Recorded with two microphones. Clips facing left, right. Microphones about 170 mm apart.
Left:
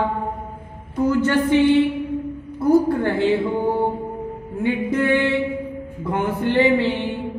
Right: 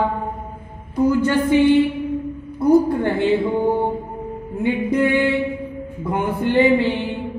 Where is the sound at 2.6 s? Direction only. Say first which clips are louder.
Right 1 dB; 15° right (ahead or behind).